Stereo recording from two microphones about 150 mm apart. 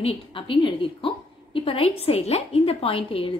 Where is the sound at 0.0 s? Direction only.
40° left (ahead or behind).